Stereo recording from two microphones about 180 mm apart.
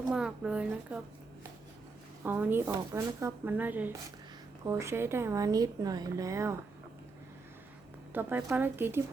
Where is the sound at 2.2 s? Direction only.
10° right (ahead or behind).